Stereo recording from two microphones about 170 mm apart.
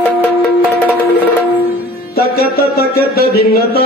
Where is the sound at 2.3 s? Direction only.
65° left (ahead or behind).